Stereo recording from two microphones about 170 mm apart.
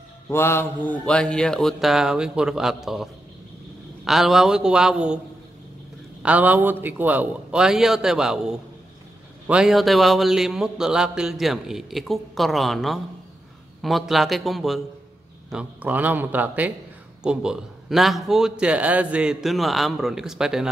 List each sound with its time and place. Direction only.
0.3 s a man's voice: 15° left (ahead or behind); by 5.2 s 5° right (ahead or behind)
6.2 s a man's voice: 10° right (ahead or behind)